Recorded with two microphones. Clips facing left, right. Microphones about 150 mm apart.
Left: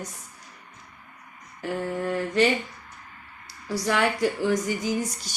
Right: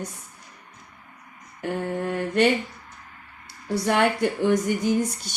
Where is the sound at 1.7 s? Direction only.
25° right (ahead or behind).